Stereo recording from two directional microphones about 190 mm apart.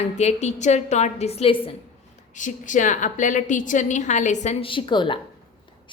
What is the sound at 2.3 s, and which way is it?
A woman's voice, 40° left (ahead or behind).